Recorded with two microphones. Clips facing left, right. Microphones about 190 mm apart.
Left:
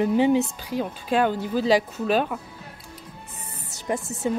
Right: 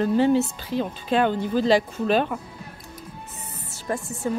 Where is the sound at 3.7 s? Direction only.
15° left (ahead or behind).